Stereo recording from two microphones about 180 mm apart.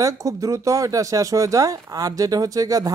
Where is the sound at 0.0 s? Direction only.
20° right (ahead or behind).